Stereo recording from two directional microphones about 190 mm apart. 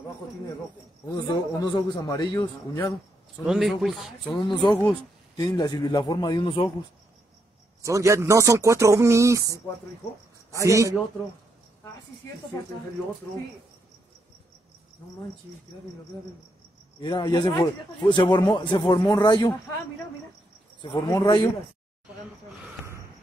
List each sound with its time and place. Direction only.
1.1 s speech: 20° left (ahead or behind)
3.4 s a man's voice: centre (ahead or behind)
4.4 s speech: 25° left (ahead or behind)
7.8 s speech: 15° right (ahead or behind)
10.6 s speech: 15° right (ahead or behind)
17.0 s speech: 25° left (ahead or behind)
20.8 s speech: 20° left (ahead or behind)